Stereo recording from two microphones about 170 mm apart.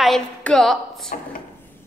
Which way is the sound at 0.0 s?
5° left (ahead or behind).